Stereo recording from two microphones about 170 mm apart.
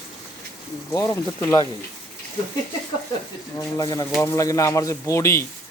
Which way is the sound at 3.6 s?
20° left (ahead or behind).